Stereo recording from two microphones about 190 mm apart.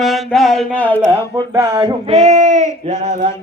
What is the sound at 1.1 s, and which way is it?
Speech, 15° right (ahead or behind).